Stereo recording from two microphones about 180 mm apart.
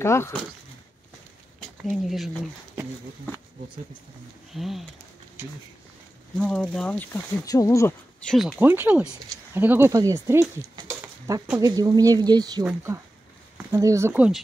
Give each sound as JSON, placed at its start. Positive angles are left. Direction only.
{"t": 0.0, "sound": "speech", "side_deg": 15}
{"t": 1.9, "sound": "speech", "side_deg": 0}
{"t": 4.6, "sound": "speech", "side_deg": 0}
{"t": 6.3, "sound": "speech", "side_deg": 5}
{"t": 8.2, "sound": "speech", "side_deg": 0}
{"t": 8.5, "sound": "speech", "side_deg": -10}